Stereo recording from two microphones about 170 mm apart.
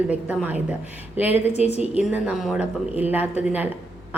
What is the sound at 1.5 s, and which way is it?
Speech, 40° left (ahead or behind).